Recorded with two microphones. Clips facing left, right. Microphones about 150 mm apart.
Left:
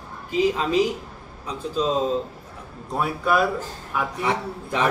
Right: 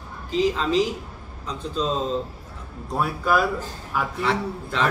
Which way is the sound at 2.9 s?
Centre (ahead or behind).